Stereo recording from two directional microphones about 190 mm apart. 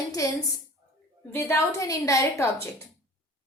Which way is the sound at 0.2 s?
15° left (ahead or behind).